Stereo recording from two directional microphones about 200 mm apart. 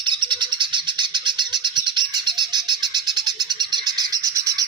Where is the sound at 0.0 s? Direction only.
25° right (ahead or behind).